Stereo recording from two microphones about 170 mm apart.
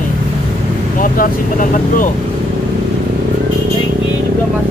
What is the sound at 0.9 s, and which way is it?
Speech, 50° left (ahead or behind).